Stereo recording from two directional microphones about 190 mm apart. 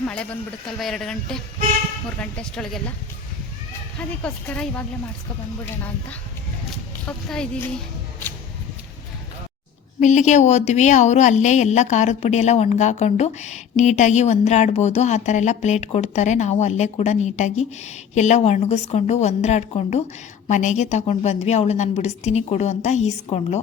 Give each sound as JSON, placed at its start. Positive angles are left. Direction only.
{"t": 0.1, "sound": "speech", "side_deg": 5}
{"t": 4.1, "sound": "speech", "side_deg": 5}
{"t": 7.3, "sound": "speech", "side_deg": 5}
{"t": 10.0, "sound": "a woman's voice", "side_deg": 40}